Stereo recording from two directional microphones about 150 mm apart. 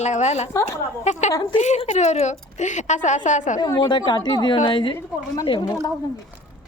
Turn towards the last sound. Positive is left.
turn(degrees=30)  # may be behind; listen again after turning